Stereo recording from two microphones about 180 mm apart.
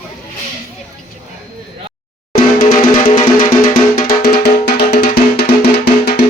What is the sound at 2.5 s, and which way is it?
Music, 50° left (ahead or behind).